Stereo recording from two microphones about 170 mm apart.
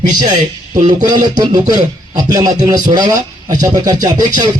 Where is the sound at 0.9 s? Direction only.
25° right (ahead or behind).